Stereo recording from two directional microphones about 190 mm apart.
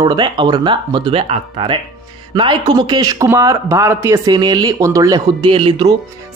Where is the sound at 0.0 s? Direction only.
25° right (ahead or behind).